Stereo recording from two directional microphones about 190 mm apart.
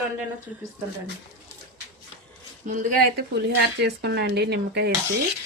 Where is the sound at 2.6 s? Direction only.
45° right (ahead or behind).